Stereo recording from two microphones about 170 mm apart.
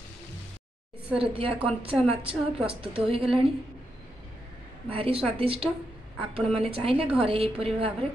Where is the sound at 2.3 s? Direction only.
5° right (ahead or behind).